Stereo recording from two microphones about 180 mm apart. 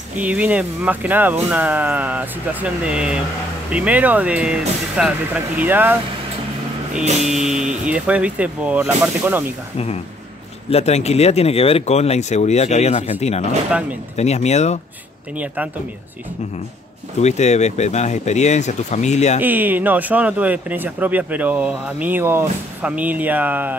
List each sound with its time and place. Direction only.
0.2 s speech: 5° right (ahead or behind)
7.4 s speech: 5° right (ahead or behind)
10.7 s speech: 35° left (ahead or behind)
15.3 s speech: 10° right (ahead or behind)
17.2 s speech: 40° left (ahead or behind)
19.4 s speech: 10° right (ahead or behind)